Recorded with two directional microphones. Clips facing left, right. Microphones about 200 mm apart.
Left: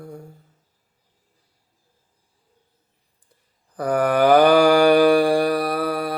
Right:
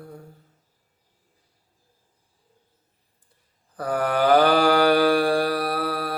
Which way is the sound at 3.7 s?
15° left (ahead or behind).